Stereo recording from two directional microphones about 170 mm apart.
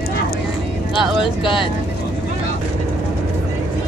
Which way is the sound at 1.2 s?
30° left (ahead or behind).